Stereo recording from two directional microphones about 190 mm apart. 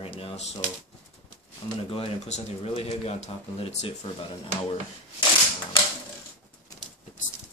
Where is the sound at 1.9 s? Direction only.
30° left (ahead or behind).